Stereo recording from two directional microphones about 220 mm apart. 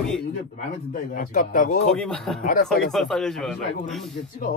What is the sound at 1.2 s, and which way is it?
Speech, 35° left (ahead or behind).